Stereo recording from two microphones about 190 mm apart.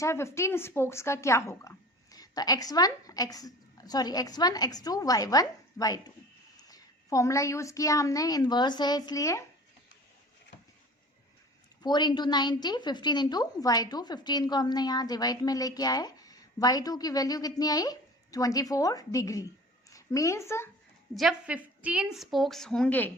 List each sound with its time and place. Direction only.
0.0 s a woman's voice: 15° left (ahead or behind)
11.8 s a woman's voice: 20° left (ahead or behind)
21.2 s a woman's voice: 5° right (ahead or behind)